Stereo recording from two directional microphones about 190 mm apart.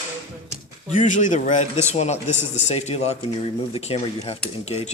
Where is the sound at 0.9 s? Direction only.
40° left (ahead or behind).